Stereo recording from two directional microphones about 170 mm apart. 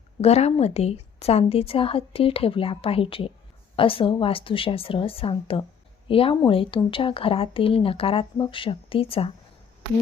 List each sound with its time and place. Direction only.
0.2 s speech: 40° left (ahead or behind)